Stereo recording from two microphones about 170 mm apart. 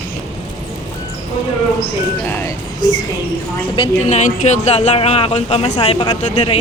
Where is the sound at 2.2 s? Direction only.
10° left (ahead or behind); by 4.2 s 30° left (ahead or behind).